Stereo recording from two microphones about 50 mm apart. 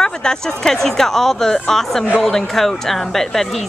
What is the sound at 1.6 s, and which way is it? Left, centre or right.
Speech, centre.